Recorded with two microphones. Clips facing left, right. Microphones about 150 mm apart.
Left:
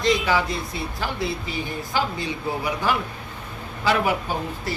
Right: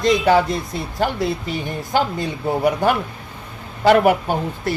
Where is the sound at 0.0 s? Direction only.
45° right (ahead or behind).